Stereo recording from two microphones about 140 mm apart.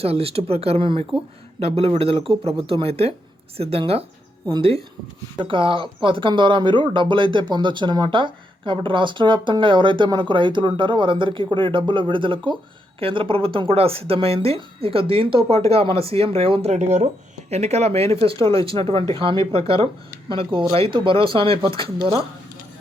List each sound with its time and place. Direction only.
0.0 s speech: 45° right (ahead or behind)
5.4 s speech: 35° right (ahead or behind)